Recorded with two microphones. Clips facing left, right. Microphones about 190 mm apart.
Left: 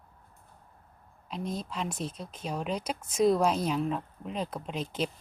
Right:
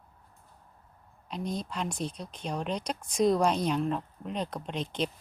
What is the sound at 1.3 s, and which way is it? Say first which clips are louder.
A woman's voice: right 1 dB; centre (ahead or behind).